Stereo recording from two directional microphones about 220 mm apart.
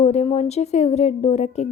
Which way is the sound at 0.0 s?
30° left (ahead or behind).